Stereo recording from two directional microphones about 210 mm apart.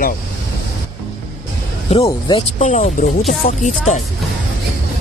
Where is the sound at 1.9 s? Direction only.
30° left (ahead or behind).